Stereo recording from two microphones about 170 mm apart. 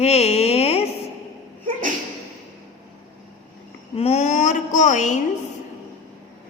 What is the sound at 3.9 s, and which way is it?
A woman's voice, 40° left (ahead or behind).